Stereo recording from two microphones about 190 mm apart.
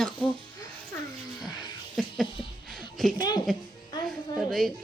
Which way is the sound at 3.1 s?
20° left (ahead or behind).